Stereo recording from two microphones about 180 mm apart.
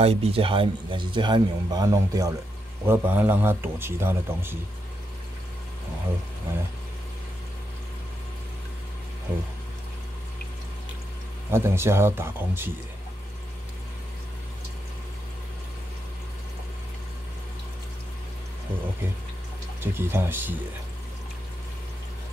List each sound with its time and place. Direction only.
0.0 s a man's voice: 35° right (ahead or behind); by 4.6 s 10° right (ahead or behind)
11.5 s a man's voice: 15° right (ahead or behind)
19.8 s a man's voice: 10° right (ahead or behind)